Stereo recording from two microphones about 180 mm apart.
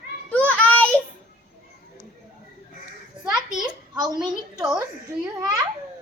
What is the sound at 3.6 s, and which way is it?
Speech, 20° right (ahead or behind).